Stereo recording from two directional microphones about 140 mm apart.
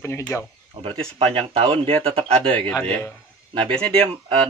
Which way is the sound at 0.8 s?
40° right (ahead or behind).